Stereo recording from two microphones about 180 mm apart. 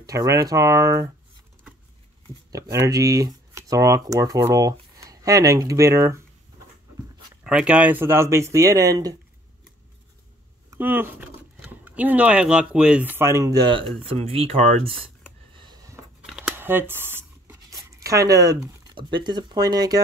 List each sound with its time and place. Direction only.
0.0 s speech: 20° right (ahead or behind)
2.5 s speech: 20° right (ahead or behind)
7.4 s speech: 5° right (ahead or behind)
10.7 s speech: 10° right (ahead or behind); by 15.0 s 35° right (ahead or behind)
15.5 s a sound: 25° right (ahead or behind)
16.3 s a sound: 5° right (ahead or behind); by 20.0 s 20° right (ahead or behind)